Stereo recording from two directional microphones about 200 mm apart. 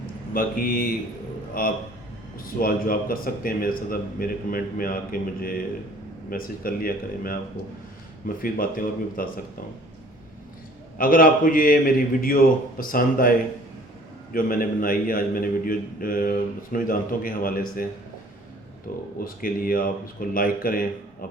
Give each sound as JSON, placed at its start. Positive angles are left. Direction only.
{"t": 0.3, "sound": "a man's voice", "side_deg": 45}
{"t": 8.4, "sound": "a man's voice", "side_deg": 45}
{"t": 10.9, "sound": "a man's voice", "side_deg": 45}
{"t": 14.3, "sound": "a man's voice", "side_deg": 45}
{"t": 18.9, "sound": "a man's voice", "side_deg": 45}